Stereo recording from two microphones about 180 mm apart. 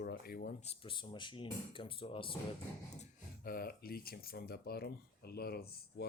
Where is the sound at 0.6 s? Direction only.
25° left (ahead or behind).